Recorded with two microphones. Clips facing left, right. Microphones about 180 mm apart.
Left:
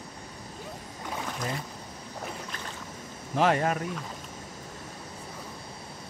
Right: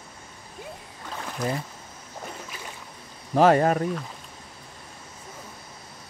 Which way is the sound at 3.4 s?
40° right (ahead or behind).